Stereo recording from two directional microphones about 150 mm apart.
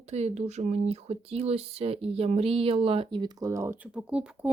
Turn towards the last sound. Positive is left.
turn(degrees=-10)  # may be behind; listen again after turning